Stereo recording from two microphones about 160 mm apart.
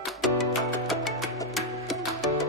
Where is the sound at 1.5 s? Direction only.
Centre (ahead or behind).